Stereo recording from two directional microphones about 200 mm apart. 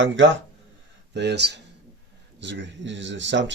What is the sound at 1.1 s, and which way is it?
Speech, 60° right (ahead or behind).